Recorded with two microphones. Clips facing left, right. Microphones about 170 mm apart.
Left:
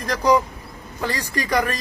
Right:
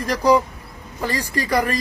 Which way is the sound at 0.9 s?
15° right (ahead or behind).